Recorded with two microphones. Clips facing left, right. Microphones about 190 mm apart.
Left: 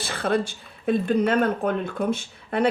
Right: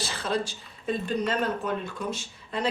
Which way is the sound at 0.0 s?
55° left (ahead or behind).